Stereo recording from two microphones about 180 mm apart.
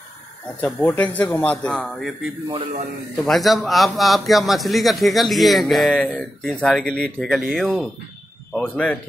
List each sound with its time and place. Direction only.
0.6 s a man's voice: 5° left (ahead or behind)
2.5 s a man's voice: 30° right (ahead or behind)
3.3 s a man's voice: centre (ahead or behind)
8.5 s speech: 5° left (ahead or behind)